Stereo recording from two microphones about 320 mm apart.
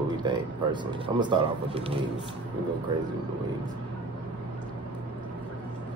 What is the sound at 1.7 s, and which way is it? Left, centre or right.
Speech, centre.